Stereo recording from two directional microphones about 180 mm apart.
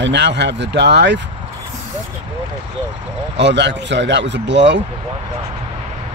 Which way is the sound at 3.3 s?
75° right (ahead or behind).